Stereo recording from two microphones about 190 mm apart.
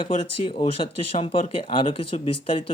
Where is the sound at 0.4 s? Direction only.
25° left (ahead or behind).